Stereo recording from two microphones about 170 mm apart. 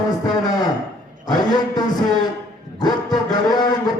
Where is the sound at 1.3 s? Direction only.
25° left (ahead or behind).